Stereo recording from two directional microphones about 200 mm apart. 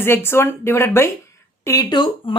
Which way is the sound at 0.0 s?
10° left (ahead or behind).